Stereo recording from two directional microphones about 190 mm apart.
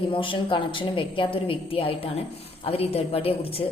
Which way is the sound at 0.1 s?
25° left (ahead or behind).